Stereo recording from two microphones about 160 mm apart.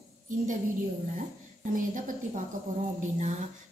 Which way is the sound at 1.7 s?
55° right (ahead or behind).